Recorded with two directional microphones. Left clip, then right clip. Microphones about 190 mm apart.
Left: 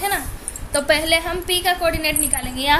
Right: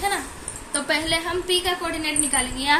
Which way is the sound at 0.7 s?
45° left (ahead or behind).